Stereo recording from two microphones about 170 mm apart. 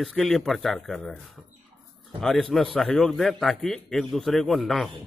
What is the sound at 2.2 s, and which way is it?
A man's voice, 5° left (ahead or behind).